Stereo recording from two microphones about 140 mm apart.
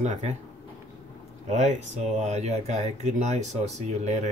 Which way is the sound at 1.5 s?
55° right (ahead or behind).